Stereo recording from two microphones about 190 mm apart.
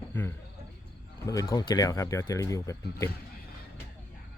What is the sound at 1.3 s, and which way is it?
Speech, 20° left (ahead or behind).